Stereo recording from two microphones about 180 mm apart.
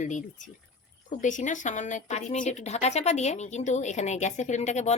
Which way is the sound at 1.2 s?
45° left (ahead or behind).